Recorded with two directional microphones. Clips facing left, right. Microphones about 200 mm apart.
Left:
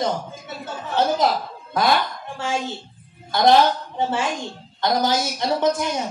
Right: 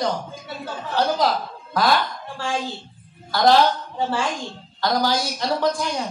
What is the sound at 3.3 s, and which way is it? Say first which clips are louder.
Speech: left 1 dB; 20° left (ahead or behind).